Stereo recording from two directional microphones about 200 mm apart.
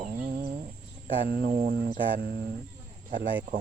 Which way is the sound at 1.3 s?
45° right (ahead or behind).